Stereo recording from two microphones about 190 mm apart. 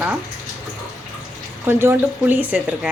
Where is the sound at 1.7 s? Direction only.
10° right (ahead or behind).